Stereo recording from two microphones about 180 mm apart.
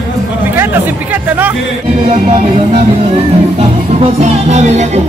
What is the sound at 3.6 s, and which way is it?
Music, 35° right (ahead or behind).